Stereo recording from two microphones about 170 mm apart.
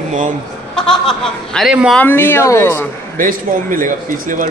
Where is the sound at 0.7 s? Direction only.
5° left (ahead or behind).